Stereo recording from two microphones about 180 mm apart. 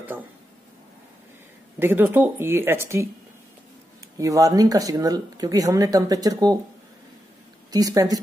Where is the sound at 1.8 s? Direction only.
10° right (ahead or behind).